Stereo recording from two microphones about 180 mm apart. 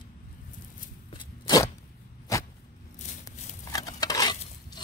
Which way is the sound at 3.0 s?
45° left (ahead or behind).